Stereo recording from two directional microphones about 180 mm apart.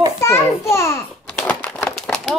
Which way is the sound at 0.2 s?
15° left (ahead or behind).